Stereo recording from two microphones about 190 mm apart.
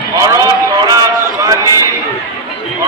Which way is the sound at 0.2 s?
20° right (ahead or behind).